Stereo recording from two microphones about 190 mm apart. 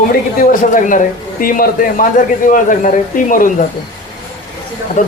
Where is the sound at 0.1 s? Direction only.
45° left (ahead or behind).